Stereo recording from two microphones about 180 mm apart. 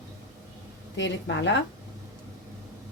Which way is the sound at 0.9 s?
75° left (ahead or behind).